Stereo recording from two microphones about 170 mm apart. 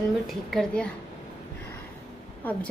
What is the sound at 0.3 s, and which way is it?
Speech, centre (ahead or behind).